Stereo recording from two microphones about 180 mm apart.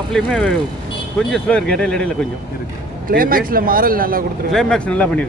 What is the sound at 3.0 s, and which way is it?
A man's voice, 50° right (ahead or behind).